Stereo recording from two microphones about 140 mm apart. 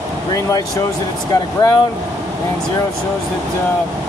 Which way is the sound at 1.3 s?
25° left (ahead or behind).